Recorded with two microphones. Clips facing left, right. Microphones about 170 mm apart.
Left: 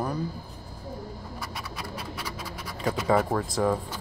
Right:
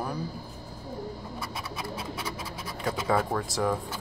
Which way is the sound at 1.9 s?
25° right (ahead or behind).